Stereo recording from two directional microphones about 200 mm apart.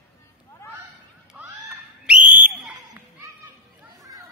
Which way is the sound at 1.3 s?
Centre (ahead or behind).